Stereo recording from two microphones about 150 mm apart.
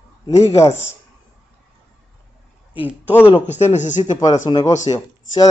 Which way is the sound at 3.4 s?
50° left (ahead or behind).